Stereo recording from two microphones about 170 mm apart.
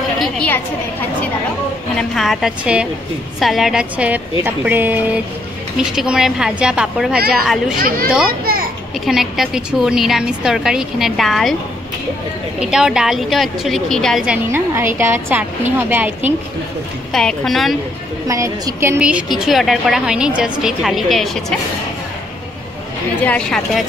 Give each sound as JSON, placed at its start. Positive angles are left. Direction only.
{"t": 0.2, "sound": "a woman's voice", "side_deg": 5}
{"t": 2.0, "sound": "a woman's voice", "side_deg": 0}
{"t": 8.3, "sound": "children playing", "side_deg": -60}
{"t": 9.0, "sound": "a woman's voice", "side_deg": 0}
{"t": 12.5, "sound": "a woman's voice", "side_deg": -5}
{"t": 17.1, "sound": "a woman's voice", "side_deg": 5}
{"t": 18.2, "sound": "a woman's voice", "side_deg": -20}
{"t": 23.2, "sound": "a woman's voice", "side_deg": 5}